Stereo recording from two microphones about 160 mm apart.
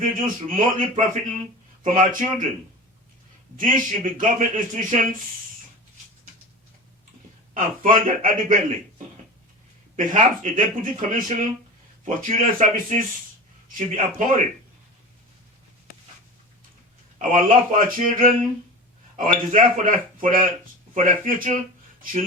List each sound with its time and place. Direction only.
0.0 s a man's voice: 60° right (ahead or behind)
3.6 s a man's voice: 55° right (ahead or behind)
7.5 s speech: 55° right (ahead or behind)
9.9 s a man's voice: 55° right (ahead or behind)
17.2 s speech: 55° right (ahead or behind)